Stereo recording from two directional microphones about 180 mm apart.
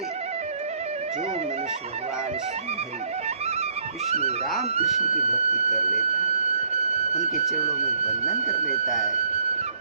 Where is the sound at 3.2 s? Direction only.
35° right (ahead or behind).